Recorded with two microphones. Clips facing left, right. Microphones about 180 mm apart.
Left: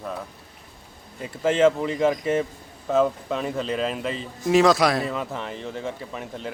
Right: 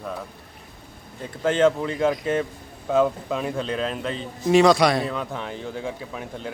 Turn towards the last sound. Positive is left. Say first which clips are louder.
# even
turn(degrees=0)  # may be behind; listen again after turning